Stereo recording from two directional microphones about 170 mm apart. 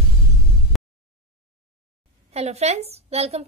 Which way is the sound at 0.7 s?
Centre (ahead or behind).